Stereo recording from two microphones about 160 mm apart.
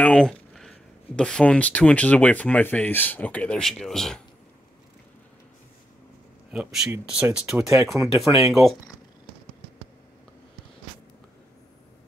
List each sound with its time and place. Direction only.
0.0 s speech: 5° left (ahead or behind)
6.5 s speech: 5° right (ahead or behind)
7.8 s speech: 20° right (ahead or behind)
8.2 s speech: centre (ahead or behind)